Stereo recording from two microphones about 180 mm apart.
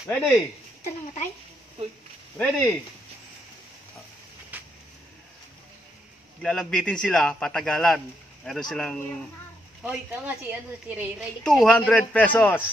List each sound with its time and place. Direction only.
0.1 s a man's voice: centre (ahead or behind)
2.3 s a man's voice: 5° left (ahead or behind)
4.5 s a sound: 10° right (ahead or behind)
6.4 s a man's voice: 5° left (ahead or behind)
9.8 s a woman's voice: 10° right (ahead or behind)
11.4 s speech: 5° left (ahead or behind)